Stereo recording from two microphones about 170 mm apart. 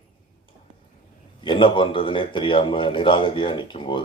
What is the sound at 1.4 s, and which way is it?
A man's voice, 30° left (ahead or behind).